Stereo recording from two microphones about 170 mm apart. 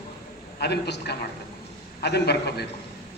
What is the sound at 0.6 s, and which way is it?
A man's voice, 80° left.